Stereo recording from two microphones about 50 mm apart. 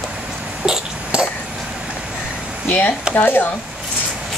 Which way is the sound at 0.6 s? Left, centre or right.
Centre.